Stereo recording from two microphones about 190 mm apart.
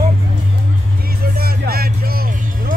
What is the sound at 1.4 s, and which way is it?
Music, 55° right (ahead or behind).